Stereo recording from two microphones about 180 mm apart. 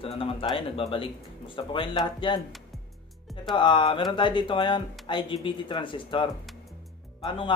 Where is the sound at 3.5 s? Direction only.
25° left (ahead or behind).